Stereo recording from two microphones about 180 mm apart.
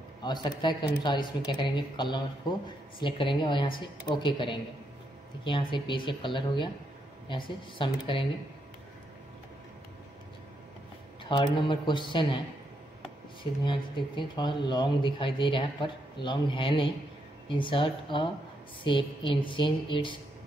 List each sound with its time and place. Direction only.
0.2 s speech: 25° left (ahead or behind)
11.2 s speech: 25° left (ahead or behind)
13.4 s speech: 25° left (ahead or behind)